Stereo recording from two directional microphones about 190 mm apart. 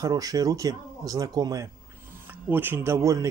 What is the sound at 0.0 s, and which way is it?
Speech, 20° right (ahead or behind).